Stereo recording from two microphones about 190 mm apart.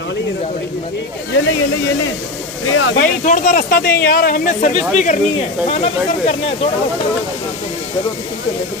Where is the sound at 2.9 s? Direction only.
40° left (ahead or behind).